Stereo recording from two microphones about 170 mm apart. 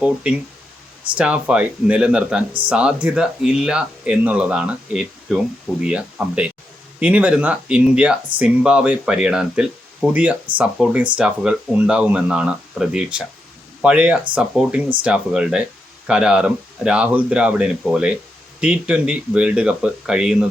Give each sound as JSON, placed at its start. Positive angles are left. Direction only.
{"t": 0.0, "sound": "speech", "side_deg": -5}